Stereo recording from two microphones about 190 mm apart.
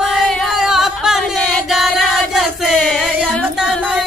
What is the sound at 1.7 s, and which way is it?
Choir, centre (ahead or behind).